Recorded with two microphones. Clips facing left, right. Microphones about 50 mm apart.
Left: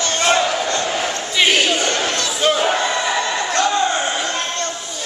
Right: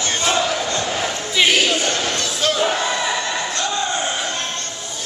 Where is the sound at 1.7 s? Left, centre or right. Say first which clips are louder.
Left 2 dB; centre.